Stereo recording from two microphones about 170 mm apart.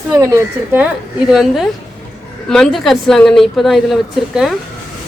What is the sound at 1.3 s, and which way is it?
Speech, centre (ahead or behind).